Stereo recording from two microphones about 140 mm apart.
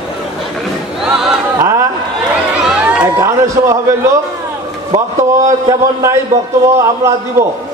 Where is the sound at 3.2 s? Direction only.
20° right (ahead or behind).